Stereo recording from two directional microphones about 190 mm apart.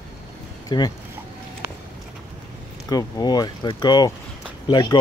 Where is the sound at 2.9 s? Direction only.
20° left (ahead or behind).